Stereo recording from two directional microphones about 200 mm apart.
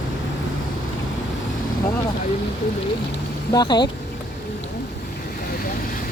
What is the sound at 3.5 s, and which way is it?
Speech, 20° left (ahead or behind).